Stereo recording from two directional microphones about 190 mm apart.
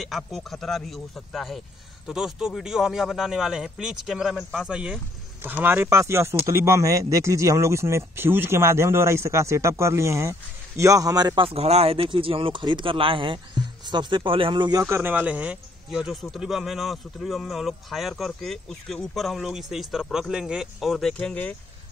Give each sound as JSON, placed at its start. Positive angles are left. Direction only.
{"t": 0.0, "sound": "speech", "side_deg": 0}